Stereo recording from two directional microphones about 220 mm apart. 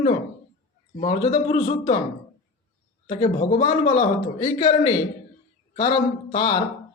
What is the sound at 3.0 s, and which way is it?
Speech, 30° left (ahead or behind).